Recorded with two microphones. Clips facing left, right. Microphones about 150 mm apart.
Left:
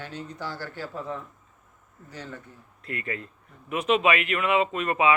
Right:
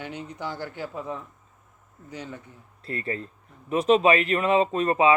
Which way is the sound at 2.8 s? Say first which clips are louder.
Right 3 dB; 30° right (ahead or behind).